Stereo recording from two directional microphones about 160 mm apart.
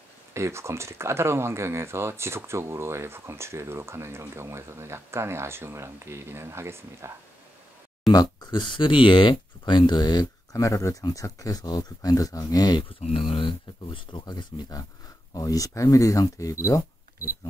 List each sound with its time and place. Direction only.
0.3 s speech: 15° right (ahead or behind)
8.1 s speech: 25° left (ahead or behind)
13.0 s speech: 35° left (ahead or behind); by 16.5 s 20° left (ahead or behind)
16.6 s camera: 20° left (ahead or behind)